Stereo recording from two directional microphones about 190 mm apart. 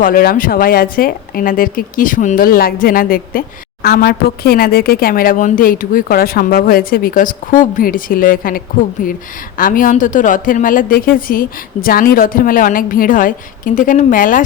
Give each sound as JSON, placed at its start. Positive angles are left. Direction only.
{"t": 0.0, "sound": "speech", "side_deg": 50}